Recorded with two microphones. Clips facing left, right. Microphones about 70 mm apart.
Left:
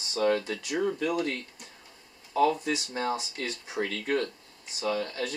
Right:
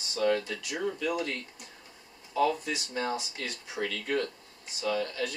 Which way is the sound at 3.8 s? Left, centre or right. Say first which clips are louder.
Left 2 dB; left.